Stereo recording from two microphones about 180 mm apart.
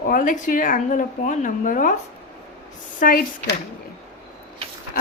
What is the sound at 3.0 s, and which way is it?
Speech, 50° left (ahead or behind).